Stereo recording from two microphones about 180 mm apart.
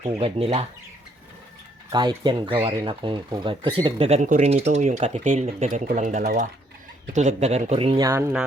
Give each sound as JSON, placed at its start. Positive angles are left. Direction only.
{"t": 0.0, "sound": "speech", "side_deg": -35}
{"t": 1.9, "sound": "speech", "side_deg": -25}
{"t": 7.9, "sound": "speech", "side_deg": -20}